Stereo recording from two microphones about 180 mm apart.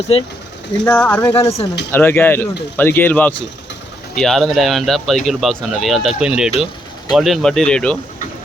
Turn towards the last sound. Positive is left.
turn(degrees=5)  # may be behind; listen again after turning